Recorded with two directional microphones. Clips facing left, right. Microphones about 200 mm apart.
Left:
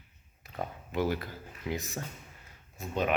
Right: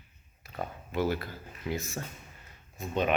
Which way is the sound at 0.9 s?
15° left (ahead or behind).